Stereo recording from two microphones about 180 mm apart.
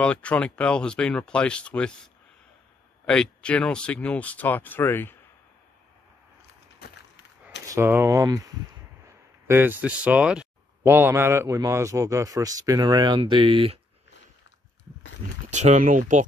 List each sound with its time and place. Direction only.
0.0 s speech: 5° left (ahead or behind)
3.1 s speech: 5° left (ahead or behind)
7.6 s a man's voice: 15° right (ahead or behind)
15.5 s speech: 40° right (ahead or behind)